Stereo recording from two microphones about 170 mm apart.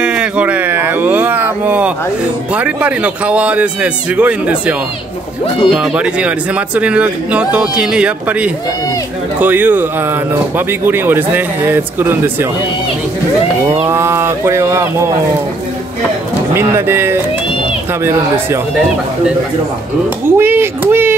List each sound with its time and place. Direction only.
0.0 s speech: 5° right (ahead or behind)
13.8 s speech: 15° right (ahead or behind)
16.5 s speech: 15° right (ahead or behind)
20.2 s speech: 15° right (ahead or behind)